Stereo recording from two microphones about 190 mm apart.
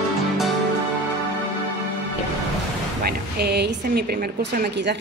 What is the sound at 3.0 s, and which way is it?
A woman's voice, 55° right (ahead or behind).